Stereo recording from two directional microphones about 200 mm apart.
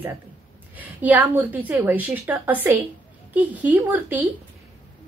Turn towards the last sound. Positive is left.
turn(degrees=-10)  # may be behind; listen again after turning